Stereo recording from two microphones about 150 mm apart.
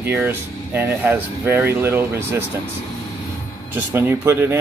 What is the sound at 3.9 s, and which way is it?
Speech, 15° right (ahead or behind).